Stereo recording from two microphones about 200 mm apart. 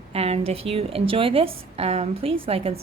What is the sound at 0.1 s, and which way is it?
A woman's voice, 30° right (ahead or behind).